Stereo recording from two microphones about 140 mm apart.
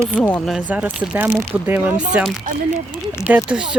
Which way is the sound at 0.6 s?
10° right (ahead or behind).